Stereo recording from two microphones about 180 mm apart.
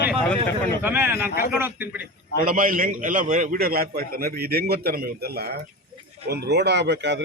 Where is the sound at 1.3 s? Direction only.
60° left (ahead or behind).